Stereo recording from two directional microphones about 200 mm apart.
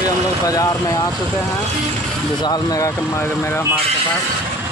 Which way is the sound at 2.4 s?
20° left (ahead or behind).